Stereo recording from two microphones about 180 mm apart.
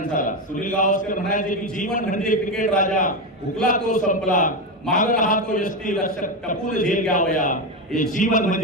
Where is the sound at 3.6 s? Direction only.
45° left (ahead or behind).